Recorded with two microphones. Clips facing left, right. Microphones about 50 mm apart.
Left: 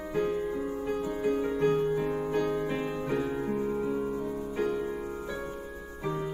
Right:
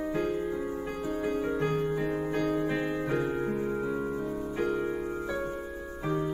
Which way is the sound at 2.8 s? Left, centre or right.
Right.